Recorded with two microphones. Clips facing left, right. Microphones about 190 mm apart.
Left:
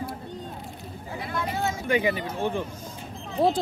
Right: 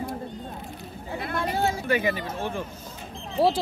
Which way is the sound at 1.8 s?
15° left (ahead or behind).